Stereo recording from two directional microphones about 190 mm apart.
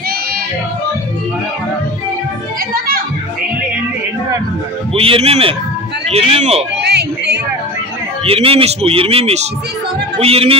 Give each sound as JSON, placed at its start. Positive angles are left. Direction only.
{"t": 4.9, "sound": "speech", "side_deg": -30}
{"t": 6.8, "sound": "a sound", "side_deg": -60}
{"t": 8.3, "sound": "speech", "side_deg": -30}